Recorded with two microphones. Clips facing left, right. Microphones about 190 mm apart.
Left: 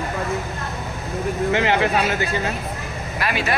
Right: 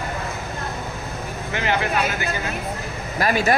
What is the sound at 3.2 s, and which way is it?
Speech, 45° right (ahead or behind).